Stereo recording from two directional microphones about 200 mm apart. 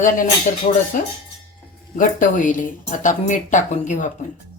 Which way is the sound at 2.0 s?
40° left (ahead or behind).